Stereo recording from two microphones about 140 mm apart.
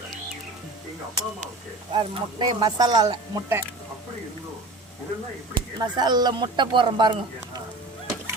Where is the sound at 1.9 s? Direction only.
35° right (ahead or behind).